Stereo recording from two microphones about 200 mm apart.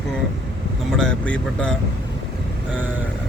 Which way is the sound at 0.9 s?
5° left (ahead or behind).